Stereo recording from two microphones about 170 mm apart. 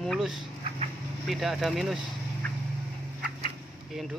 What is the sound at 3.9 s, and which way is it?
Speech, 5° right (ahead or behind).